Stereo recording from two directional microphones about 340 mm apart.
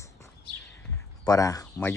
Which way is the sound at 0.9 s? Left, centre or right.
Centre.